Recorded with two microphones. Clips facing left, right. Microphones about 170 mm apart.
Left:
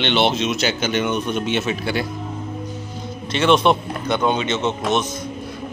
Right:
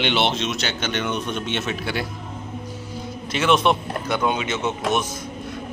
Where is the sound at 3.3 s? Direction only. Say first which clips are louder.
Left 3 dB; 5° right (ahead or behind).